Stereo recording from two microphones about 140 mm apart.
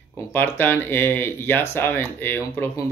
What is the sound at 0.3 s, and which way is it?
Speech, 15° left (ahead or behind).